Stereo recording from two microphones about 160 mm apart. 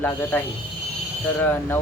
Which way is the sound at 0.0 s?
15° left (ahead or behind).